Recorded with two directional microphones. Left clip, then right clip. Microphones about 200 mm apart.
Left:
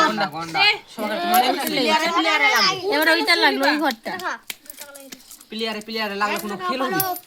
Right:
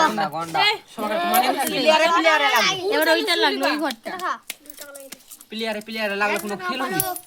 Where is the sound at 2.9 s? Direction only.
50° left (ahead or behind).